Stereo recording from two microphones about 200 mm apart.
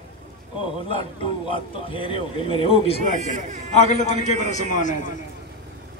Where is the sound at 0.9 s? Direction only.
25° left (ahead or behind).